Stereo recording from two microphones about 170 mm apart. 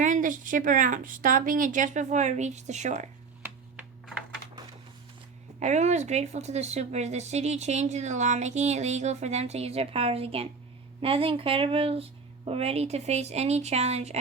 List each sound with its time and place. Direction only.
0.0 s a woman's voice: 50° right (ahead or behind)
5.5 s speech: 45° right (ahead or behind)